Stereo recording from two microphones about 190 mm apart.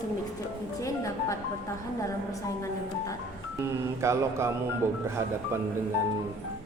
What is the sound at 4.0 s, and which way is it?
Mantra, 15° right (ahead or behind).